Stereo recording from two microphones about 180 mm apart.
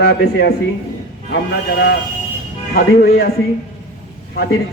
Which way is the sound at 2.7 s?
60° left (ahead or behind).